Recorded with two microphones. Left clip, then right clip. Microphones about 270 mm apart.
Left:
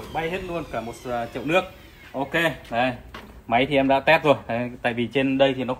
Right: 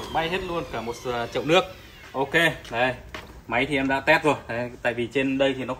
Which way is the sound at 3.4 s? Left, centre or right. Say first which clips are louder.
Left 4 dB; left.